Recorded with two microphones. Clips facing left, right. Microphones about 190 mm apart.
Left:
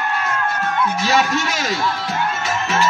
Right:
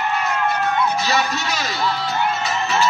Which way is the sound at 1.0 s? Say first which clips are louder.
Left 3 dB; 45° left (ahead or behind).